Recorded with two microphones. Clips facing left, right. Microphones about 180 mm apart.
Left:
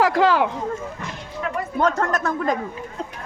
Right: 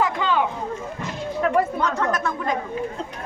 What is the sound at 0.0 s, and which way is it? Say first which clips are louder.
Speech: left 4 dB; 85° left.